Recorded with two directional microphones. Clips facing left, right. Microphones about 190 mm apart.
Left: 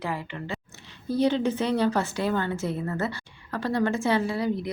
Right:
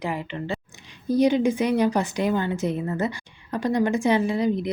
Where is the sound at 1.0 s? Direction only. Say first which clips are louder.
Right 4 dB; 15° right (ahead or behind).